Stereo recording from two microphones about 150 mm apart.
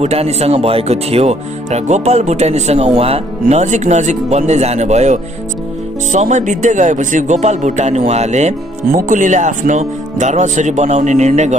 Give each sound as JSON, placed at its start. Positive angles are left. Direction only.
{"t": 0.0, "sound": "speech", "side_deg": -45}